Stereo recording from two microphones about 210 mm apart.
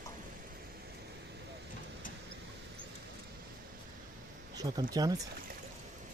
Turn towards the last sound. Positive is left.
turn(degrees=-20)  # may be behind; listen again after turning